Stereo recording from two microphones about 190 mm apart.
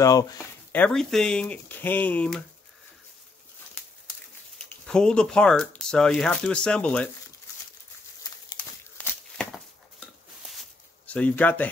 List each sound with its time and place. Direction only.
0.0 s speech: 20° left (ahead or behind)
0.4 s speech: 5° left (ahead or behind)
4.8 s speech: 5° left (ahead or behind)
8.9 s a sound: 5° left (ahead or behind)